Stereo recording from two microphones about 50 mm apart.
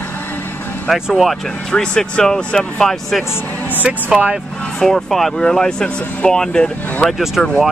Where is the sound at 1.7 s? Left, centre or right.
Centre.